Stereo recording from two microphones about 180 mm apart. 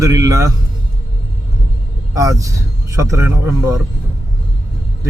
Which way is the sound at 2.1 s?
20° right (ahead or behind).